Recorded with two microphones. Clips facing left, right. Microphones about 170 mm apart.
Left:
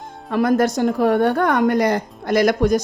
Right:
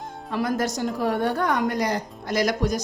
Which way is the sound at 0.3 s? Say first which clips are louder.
Left 8 dB; 60° left (ahead or behind).